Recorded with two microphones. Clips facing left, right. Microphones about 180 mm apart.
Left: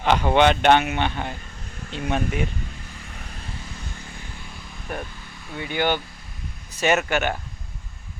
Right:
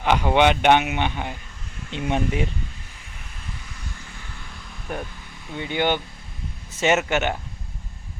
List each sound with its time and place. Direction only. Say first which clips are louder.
0.0 s speech: even; 10° right (ahead or behind)
1.9 s speech: right 1 dB; 20° right (ahead or behind)
5.5 s speech: right 1 dB; 20° right (ahead or behind)